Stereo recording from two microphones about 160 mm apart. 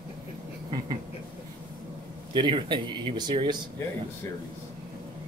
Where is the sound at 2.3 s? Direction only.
30° right (ahead or behind).